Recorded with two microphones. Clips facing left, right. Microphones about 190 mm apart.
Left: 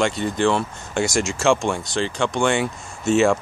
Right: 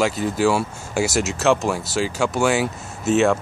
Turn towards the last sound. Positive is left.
turn(degrees=0)  # may be behind; listen again after turning